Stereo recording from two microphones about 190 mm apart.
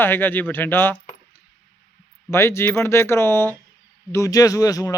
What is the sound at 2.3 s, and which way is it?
Speech, 15° left (ahead or behind).